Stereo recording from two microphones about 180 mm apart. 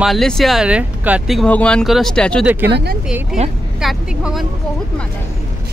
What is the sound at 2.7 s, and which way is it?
Speech, 65° right (ahead or behind).